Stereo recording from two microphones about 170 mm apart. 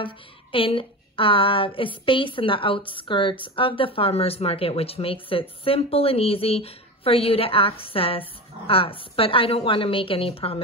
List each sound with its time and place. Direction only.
0.0 s speech: 30° left (ahead or behind)